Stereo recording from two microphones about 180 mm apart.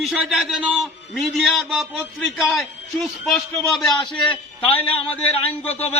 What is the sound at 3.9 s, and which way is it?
Speech, 25° left (ahead or behind).